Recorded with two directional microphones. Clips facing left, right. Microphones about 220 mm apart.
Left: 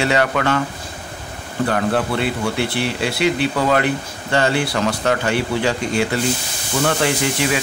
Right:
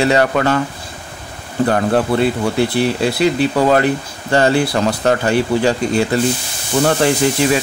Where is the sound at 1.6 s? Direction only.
40° right (ahead or behind).